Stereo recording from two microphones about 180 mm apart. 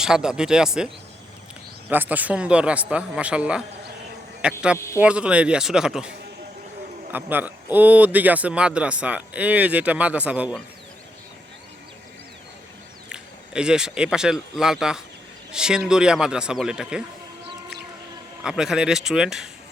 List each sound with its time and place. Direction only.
0.0 s speech: 5° right (ahead or behind)
1.9 s speech: 10° right (ahead or behind)
13.1 s speech: 5° right (ahead or behind)
18.4 s speech: 5° right (ahead or behind)